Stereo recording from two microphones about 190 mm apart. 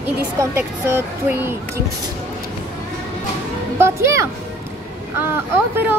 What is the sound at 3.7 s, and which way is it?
Speech, 15° right (ahead or behind).